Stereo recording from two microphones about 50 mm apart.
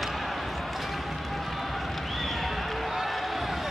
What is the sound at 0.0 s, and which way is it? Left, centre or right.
Run, centre.